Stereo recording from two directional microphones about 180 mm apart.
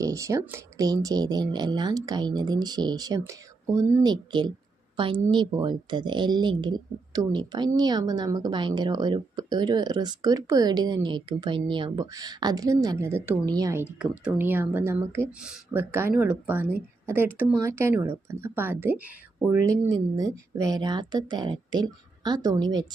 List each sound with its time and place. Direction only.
0.0 s speech: 20° right (ahead or behind)